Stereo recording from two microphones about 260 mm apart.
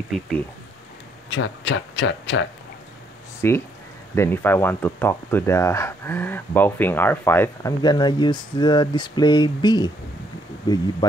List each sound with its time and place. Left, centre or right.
1.3 s speech: left
3.4 s speech: centre